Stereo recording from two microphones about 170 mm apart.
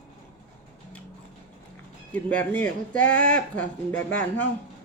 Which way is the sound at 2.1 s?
10° left (ahead or behind).